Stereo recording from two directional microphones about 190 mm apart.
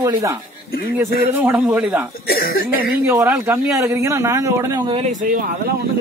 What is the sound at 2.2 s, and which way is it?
Speech, 50° left (ahead or behind).